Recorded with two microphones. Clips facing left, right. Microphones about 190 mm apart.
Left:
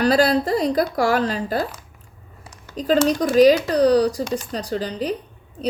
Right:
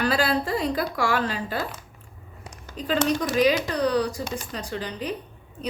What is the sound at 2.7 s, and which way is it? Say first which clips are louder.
Speech: left 6 dB; 40° left (ahead or behind).